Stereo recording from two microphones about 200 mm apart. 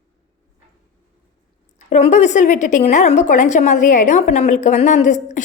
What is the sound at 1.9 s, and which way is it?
A woman's voice, 35° left (ahead or behind).